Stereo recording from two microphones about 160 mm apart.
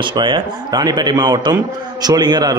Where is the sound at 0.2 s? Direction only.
25° right (ahead or behind).